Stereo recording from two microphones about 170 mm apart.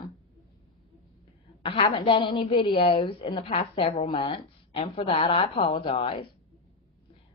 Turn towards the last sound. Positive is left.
turn(degrees=30)  # may be behind; listen again after turning